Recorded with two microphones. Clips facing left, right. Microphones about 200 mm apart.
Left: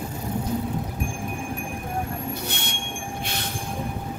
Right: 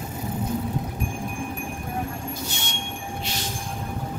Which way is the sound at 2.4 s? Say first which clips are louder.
Left 2 dB; 60° left (ahead or behind).